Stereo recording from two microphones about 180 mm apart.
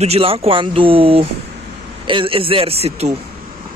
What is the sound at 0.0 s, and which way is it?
Speech, 35° right (ahead or behind).